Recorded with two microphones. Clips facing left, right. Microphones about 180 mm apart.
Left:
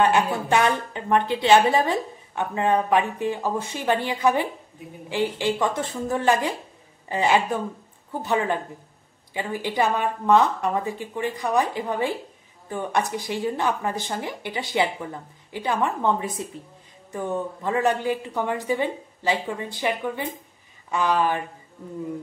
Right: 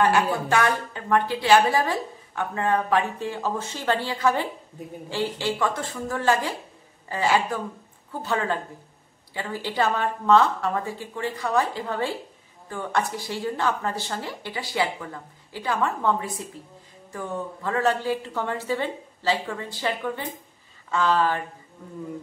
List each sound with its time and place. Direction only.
0.0 s a woman's voice: 20° left (ahead or behind)